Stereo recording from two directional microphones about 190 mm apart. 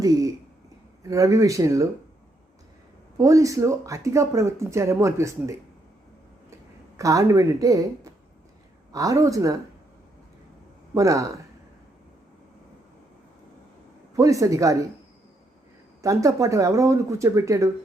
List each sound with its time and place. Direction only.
0.0 s speech: 20° right (ahead or behind)
3.2 s speech: 15° right (ahead or behind)
6.9 s speech: 15° right (ahead or behind)
10.9 s speech: 15° right (ahead or behind)
14.2 s speech: 15° right (ahead or behind)
16.0 s speech: 15° right (ahead or behind)